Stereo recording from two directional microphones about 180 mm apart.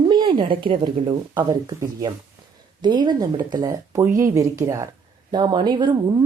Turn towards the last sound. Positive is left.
turn(degrees=-25)  # may be behind; listen again after turning